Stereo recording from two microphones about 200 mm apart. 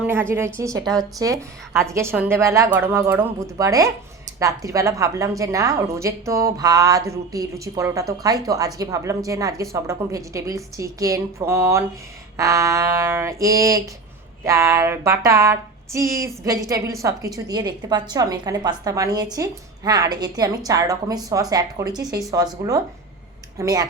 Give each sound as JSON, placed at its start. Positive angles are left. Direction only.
{"t": 0.0, "sound": "a woman's voice", "side_deg": -10}
{"t": 23.6, "sound": "a woman's voice", "side_deg": -15}